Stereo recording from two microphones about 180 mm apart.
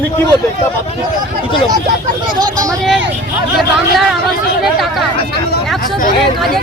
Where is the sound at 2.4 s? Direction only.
20° right (ahead or behind).